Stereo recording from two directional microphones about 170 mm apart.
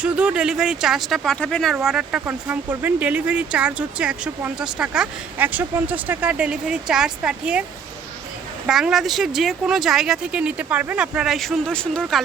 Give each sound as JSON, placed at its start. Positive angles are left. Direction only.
{"t": 0.0, "sound": "speech", "side_deg": -5}
{"t": 8.6, "sound": "speech", "side_deg": -5}